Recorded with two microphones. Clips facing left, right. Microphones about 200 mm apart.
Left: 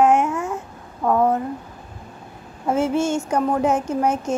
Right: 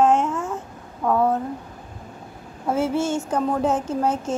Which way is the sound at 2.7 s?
15° left (ahead or behind).